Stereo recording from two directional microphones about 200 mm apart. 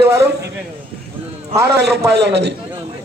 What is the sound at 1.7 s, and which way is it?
Speech, 55° right (ahead or behind).